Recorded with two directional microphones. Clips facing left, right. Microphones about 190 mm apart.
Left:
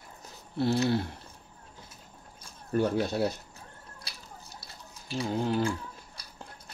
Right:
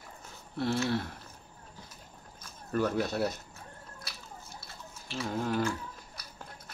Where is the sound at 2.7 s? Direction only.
30° left (ahead or behind).